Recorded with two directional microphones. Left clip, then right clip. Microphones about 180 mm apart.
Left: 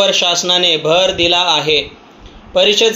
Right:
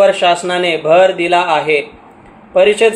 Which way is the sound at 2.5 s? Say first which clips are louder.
Right 1 dB; 45° left (ahead or behind).